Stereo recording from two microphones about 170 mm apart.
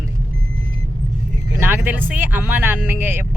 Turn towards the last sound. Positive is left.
turn(degrees=-10)  # may be behind; listen again after turning